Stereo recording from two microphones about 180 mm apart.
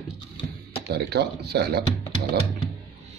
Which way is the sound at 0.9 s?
65° right (ahead or behind).